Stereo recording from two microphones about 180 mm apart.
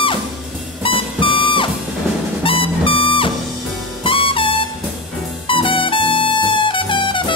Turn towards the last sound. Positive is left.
turn(degrees=25)  # may be behind; listen again after turning